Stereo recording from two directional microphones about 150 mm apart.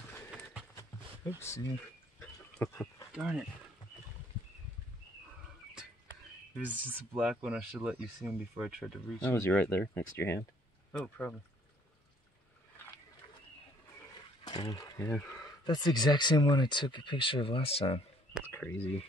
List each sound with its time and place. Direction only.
0.7 s a sound: 20° left (ahead or behind)
3.1 s speech: 10° right (ahead or behind)
6.7 s speech: 10° right (ahead or behind)
9.2 s speech: 10° left (ahead or behind)
14.4 s speech: 30° left (ahead or behind)
18.5 s speech: 15° left (ahead or behind)